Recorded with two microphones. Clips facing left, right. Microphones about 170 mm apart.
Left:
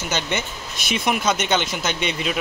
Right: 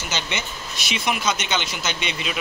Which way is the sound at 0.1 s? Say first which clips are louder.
Left 4 dB; 55° left (ahead or behind).